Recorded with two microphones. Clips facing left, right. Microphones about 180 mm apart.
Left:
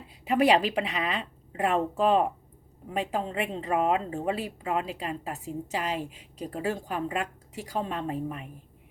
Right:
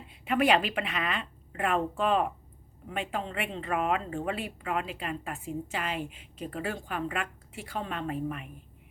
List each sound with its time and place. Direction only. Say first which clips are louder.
0.3 s a woman's voice: left 3 dB; 35° left (ahead or behind)
3.8 s a woman's voice: left 4 dB; 30° left (ahead or behind)
4.2 s a woman's voice: left 3 dB; 40° left (ahead or behind)
4.6 s a woman's voice: left 2 dB; 25° left (ahead or behind)